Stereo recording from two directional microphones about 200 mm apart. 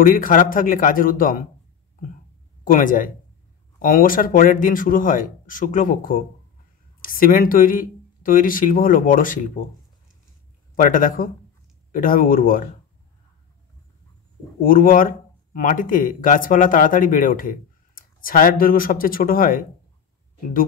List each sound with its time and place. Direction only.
0.0 s speech: 45° left (ahead or behind)
2.6 s speech: 40° left (ahead or behind)
10.8 s speech: 45° left (ahead or behind)
14.6 s speech: 45° left (ahead or behind)